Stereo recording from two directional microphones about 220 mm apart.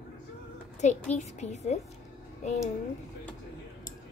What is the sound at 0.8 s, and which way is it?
Speech, 30° left (ahead or behind).